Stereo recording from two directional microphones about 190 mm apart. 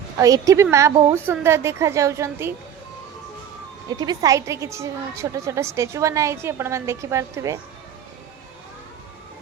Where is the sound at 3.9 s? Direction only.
20° right (ahead or behind).